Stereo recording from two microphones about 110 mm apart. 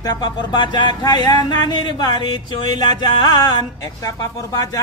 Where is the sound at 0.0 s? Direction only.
40° left (ahead or behind).